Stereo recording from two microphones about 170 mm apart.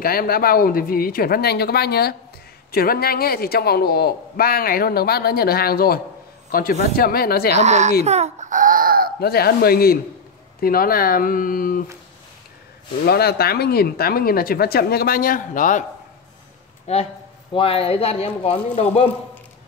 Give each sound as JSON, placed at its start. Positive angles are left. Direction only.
{"t": 0.0, "sound": "a man's voice", "side_deg": 60}
{"t": 7.5, "sound": "a woman's voice", "side_deg": -40}
{"t": 8.0, "sound": "baby cry", "side_deg": -40}
{"t": 9.2, "sound": "a man's voice", "side_deg": 65}
{"t": 13.0, "sound": "a man's voice", "side_deg": 65}
{"t": 16.8, "sound": "speech", "side_deg": 40}